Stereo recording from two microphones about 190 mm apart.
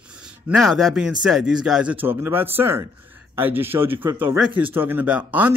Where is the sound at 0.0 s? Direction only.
5° right (ahead or behind).